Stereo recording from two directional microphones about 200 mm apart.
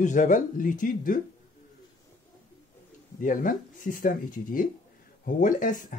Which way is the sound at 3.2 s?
40° left (ahead or behind).